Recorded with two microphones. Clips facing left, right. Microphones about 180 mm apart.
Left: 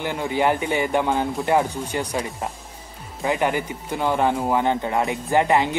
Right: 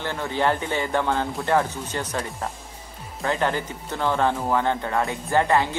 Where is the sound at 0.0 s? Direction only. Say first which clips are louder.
Left 2 dB; 15° left (ahead or behind).